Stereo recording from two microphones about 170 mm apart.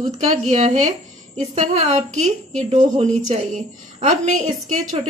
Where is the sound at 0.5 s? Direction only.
40° right (ahead or behind).